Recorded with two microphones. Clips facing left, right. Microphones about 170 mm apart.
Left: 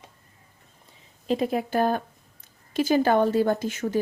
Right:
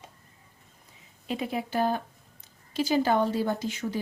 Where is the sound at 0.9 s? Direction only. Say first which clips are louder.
Left 8 dB; 35° left (ahead or behind).